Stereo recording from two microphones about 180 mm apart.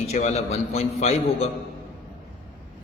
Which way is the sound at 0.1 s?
35° left (ahead or behind).